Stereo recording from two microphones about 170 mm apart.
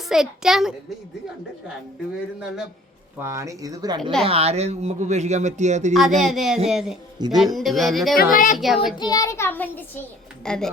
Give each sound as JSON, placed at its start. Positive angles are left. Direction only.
{"t": 0.1, "sound": "a child's voice", "side_deg": 0}
{"t": 3.2, "sound": "speech", "side_deg": -15}
{"t": 4.2, "sound": "a man's voice", "side_deg": -35}
{"t": 6.2, "sound": "a child's voice", "side_deg": 0}
{"t": 8.1, "sound": "a child's voice", "side_deg": 55}
{"t": 8.5, "sound": "a child's voice", "side_deg": 0}
{"t": 9.0, "sound": "a child's voice", "side_deg": 20}